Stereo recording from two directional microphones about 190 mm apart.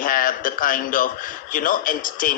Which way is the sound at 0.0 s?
50° left (ahead or behind).